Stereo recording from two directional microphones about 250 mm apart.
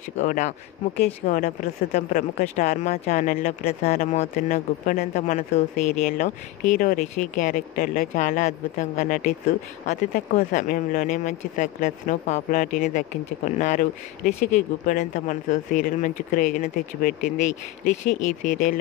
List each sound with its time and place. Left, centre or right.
0.2 s speech: left